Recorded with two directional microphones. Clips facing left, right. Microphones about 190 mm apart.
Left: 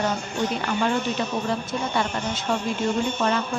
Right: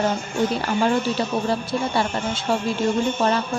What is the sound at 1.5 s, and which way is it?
A woman's voice, 30° right (ahead or behind).